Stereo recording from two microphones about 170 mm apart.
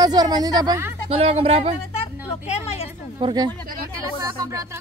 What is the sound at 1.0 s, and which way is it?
Speech, 35° right (ahead or behind).